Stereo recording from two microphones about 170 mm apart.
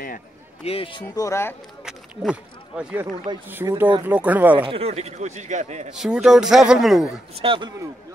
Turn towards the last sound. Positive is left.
turn(degrees=-30)  # may be behind; listen again after turning